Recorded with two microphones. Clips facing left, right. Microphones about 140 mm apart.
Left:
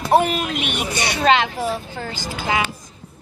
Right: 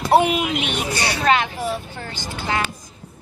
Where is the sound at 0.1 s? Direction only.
10° right (ahead or behind).